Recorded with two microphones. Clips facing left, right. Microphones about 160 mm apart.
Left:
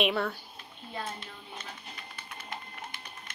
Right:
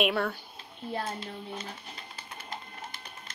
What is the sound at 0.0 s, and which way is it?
Speech, 5° right (ahead or behind).